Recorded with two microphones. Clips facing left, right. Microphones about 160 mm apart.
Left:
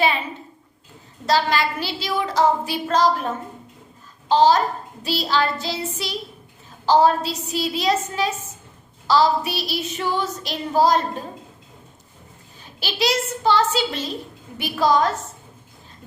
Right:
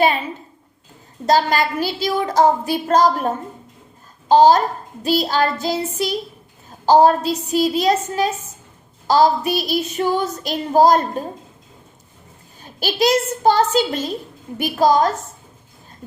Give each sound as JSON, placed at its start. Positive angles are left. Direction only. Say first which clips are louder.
{"t": 1.3, "sound": "child singing", "louder": "right 3 dB", "side_deg": -45}
{"t": 12.6, "sound": "child singing", "louder": "right 5 dB", "side_deg": -45}